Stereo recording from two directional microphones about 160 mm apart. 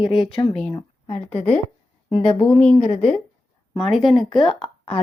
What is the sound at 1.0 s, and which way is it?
Speech, 40° left (ahead or behind).